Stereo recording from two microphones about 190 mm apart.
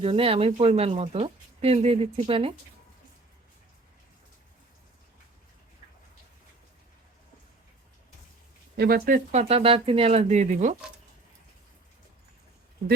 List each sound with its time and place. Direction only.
0.0 s speech: 30° right (ahead or behind)
8.7 s speech: 55° right (ahead or behind); by 10.8 s 40° right (ahead or behind)